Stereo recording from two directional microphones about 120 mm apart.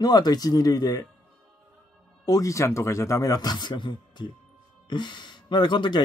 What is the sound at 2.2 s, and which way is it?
Speech, 30° left (ahead or behind).